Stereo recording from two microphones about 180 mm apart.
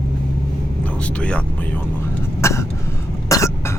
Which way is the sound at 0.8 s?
5° left (ahead or behind).